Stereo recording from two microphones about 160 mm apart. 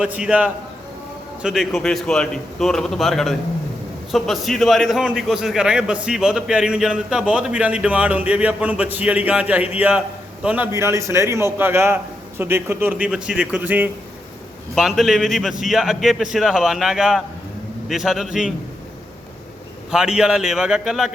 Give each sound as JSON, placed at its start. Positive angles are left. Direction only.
{"t": 0.0, "sound": "a man's voice", "side_deg": -10}
{"t": 14.8, "sound": "a man's voice", "side_deg": 0}
{"t": 19.9, "sound": "a man's voice", "side_deg": -5}